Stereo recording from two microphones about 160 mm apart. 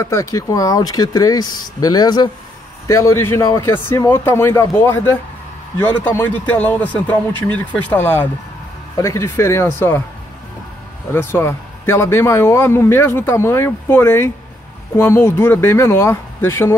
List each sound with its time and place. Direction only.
0.0 s a man's voice: 20° left (ahead or behind)
11.1 s a man's voice: 15° left (ahead or behind)